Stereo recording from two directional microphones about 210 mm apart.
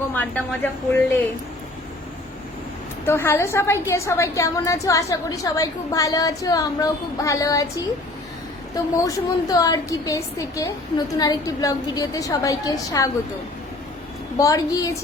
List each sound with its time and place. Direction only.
0.1 s a woman's voice: 10° left (ahead or behind)
3.1 s a woman's voice: 10° left (ahead or behind)
8.7 s a woman's voice: 15° left (ahead or behind)
14.3 s a woman's voice: 15° left (ahead or behind)